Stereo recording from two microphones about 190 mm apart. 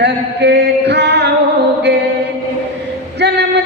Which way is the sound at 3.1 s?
65° right (ahead or behind).